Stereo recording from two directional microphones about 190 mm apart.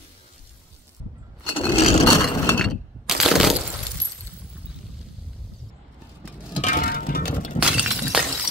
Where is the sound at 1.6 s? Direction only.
30° left (ahead or behind).